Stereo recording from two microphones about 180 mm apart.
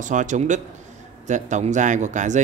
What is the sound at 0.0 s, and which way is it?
Speech, 45° right (ahead or behind).